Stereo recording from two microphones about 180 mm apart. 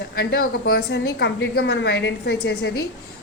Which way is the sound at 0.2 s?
55° left (ahead or behind).